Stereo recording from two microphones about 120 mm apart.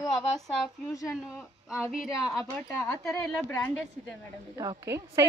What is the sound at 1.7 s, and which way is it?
Speech, 5° right (ahead or behind).